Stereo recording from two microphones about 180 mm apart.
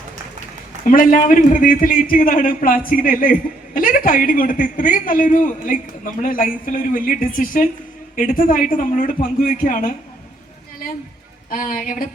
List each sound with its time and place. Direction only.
0.9 s a man's voice: 50° left (ahead or behind)
11.5 s a man's voice: 50° left (ahead or behind)